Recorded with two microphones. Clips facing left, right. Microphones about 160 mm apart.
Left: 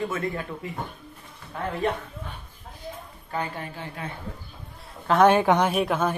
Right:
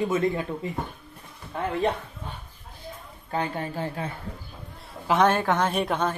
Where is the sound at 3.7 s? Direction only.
35° right (ahead or behind).